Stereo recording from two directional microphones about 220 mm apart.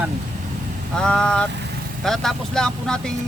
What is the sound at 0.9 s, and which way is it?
Vehicle, 5° left (ahead or behind).